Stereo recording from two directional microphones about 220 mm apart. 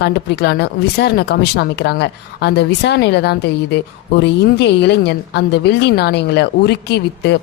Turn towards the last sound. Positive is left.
turn(degrees=50)  # may be behind; listen again after turning